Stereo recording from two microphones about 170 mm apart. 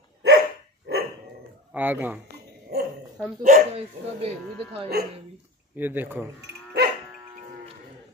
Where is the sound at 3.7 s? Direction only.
35° right (ahead or behind).